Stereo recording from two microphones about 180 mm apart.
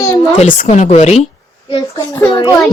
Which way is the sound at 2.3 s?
30° left (ahead or behind).